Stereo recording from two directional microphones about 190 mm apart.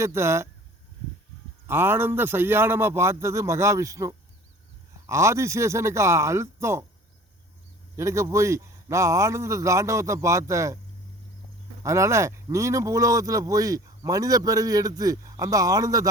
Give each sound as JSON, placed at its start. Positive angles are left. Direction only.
{"t": 0.0, "sound": "speech", "side_deg": -15}
{"t": 1.6, "sound": "speech", "side_deg": -10}
{"t": 7.9, "sound": "speech", "side_deg": -15}
{"t": 11.8, "sound": "speech", "side_deg": -15}